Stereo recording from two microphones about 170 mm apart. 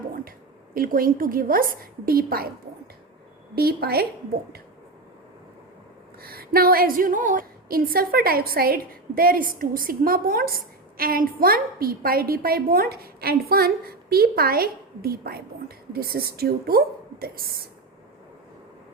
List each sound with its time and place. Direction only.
0.3 s a woman's voice: 55° right (ahead or behind)
3.5 s a woman's voice: 65° right (ahead or behind)
6.2 s a woman's voice: 60° right (ahead or behind)